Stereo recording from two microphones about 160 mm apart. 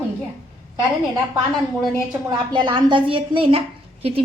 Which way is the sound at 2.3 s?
30° right (ahead or behind).